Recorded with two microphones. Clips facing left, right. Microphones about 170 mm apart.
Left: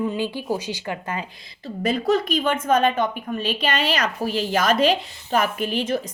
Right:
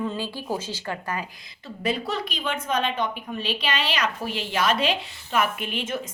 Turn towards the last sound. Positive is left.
turn(degrees=35)  # may be behind; listen again after turning